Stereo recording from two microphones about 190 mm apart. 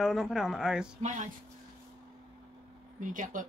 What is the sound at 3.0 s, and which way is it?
Speech, 45° right (ahead or behind).